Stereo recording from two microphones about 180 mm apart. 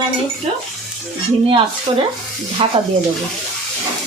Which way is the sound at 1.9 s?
30° right (ahead or behind).